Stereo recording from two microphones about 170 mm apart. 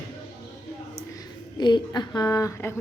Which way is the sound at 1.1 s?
25° left (ahead or behind).